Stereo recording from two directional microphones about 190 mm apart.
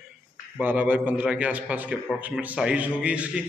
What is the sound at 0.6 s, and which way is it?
A man's voice, 10° right (ahead or behind).